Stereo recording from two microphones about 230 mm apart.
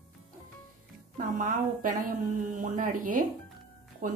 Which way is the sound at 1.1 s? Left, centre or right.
Right.